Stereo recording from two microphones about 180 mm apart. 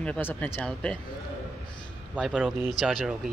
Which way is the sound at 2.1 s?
Centre (ahead or behind).